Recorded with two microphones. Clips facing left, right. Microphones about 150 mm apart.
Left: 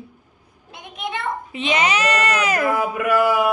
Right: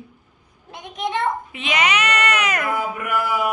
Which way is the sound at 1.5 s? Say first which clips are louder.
Left 2 dB; 30° left (ahead or behind).